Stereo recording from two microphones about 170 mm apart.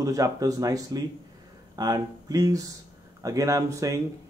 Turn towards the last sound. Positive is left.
turn(degrees=-20)  # may be behind; listen again after turning